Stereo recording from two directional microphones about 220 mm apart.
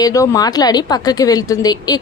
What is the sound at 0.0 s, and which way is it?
A woman's voice, 15° left (ahead or behind).